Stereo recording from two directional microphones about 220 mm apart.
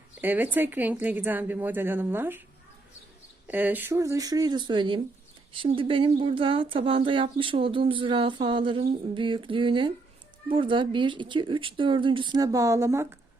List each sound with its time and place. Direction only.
0.2 s a woman's voice: 10° right (ahead or behind)
3.4 s a woman's voice: 10° right (ahead or behind)